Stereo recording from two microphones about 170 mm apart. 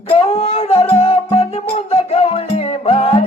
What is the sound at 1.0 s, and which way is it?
Music, 30° left (ahead or behind).